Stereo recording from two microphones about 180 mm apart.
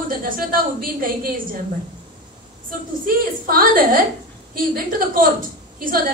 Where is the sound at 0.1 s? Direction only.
50° right (ahead or behind).